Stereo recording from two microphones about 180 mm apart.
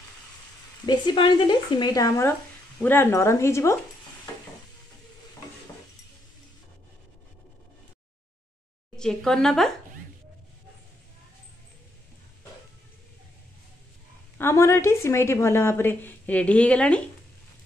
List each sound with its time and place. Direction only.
0.8 s a woman's voice: 25° left (ahead or behind)
8.9 s a woman's voice: 5° left (ahead or behind)
14.4 s a woman's voice: 15° left (ahead or behind)